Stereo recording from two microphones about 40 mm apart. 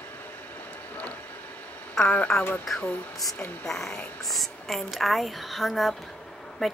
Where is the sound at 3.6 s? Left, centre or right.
Centre.